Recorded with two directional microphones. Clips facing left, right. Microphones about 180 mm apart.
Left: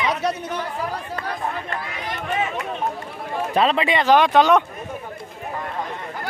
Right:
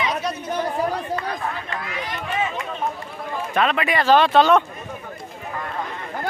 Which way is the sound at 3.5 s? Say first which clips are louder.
Left 2 dB; 30° left (ahead or behind).